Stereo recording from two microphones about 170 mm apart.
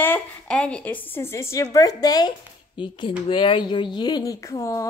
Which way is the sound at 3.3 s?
30° left (ahead or behind).